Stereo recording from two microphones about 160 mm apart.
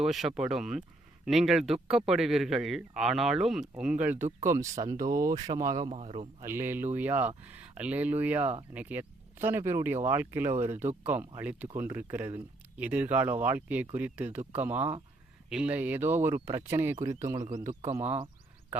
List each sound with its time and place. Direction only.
0.0 s speech: centre (ahead or behind); by 4.7 s 20° right (ahead or behind)
4.9 s speech: 60° right (ahead or behind)
5.2 s speech: 20° right (ahead or behind)
5.9 s a man's voice: 40° right (ahead or behind)
6.4 s speech: 15° right (ahead or behind)